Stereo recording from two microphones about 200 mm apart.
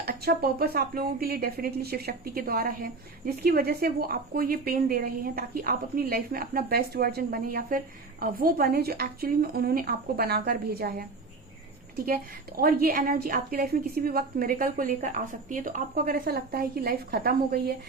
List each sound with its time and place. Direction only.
0.0 s speech: 50° right (ahead or behind)
12.0 s speech: 45° right (ahead or behind)